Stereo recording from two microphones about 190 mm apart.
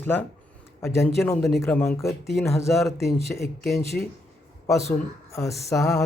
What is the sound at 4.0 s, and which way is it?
Speech, centre (ahead or behind).